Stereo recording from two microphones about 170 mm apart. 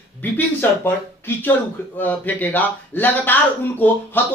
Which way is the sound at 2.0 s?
10° left (ahead or behind).